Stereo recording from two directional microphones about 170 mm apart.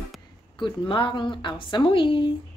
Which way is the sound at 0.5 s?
30° left (ahead or behind).